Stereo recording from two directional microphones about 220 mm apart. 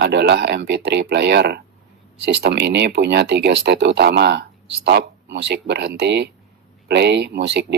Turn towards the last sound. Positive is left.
turn(degrees=-50)  # may be behind; listen again after turning